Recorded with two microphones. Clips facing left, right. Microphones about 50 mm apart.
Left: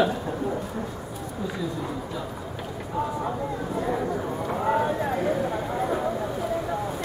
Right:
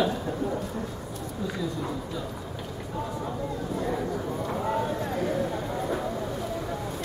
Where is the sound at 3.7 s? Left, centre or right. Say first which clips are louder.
Left 3 dB; centre.